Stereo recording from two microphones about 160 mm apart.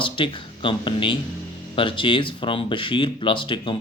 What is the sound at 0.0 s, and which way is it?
Speech, 30° left (ahead or behind).